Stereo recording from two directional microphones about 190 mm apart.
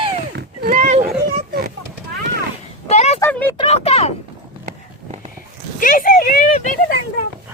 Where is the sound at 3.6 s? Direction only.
30° left (ahead or behind).